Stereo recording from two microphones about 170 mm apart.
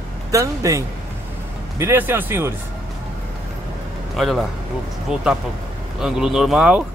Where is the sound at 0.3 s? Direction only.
20° right (ahead or behind).